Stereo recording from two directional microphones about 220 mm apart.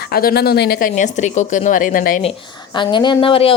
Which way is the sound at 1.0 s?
35° left (ahead or behind).